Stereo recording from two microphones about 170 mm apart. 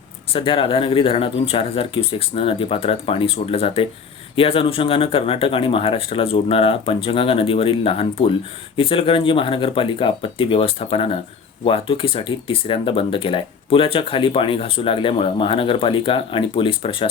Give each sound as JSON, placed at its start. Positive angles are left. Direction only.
{"t": 0.3, "sound": "speech", "side_deg": 30}